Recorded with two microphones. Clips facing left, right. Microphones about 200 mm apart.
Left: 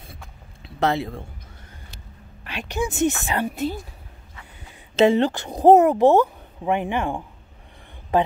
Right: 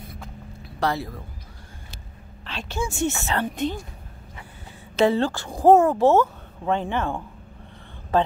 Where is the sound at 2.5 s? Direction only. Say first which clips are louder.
Left 3 dB; 15° left (ahead or behind).